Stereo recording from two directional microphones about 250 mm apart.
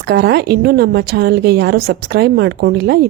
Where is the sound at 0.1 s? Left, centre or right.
Right.